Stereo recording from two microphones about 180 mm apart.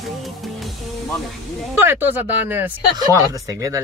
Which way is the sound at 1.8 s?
10° right (ahead or behind).